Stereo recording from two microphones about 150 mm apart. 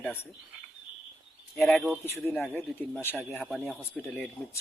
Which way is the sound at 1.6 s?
10° left (ahead or behind).